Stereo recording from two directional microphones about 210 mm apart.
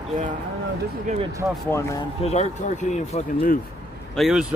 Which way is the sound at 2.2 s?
35° left (ahead or behind).